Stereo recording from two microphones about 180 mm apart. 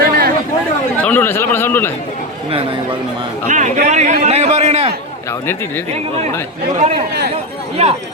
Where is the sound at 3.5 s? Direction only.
45° right (ahead or behind).